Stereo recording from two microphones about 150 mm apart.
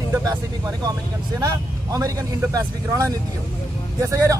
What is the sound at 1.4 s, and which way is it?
A man's voice, 25° right (ahead or behind).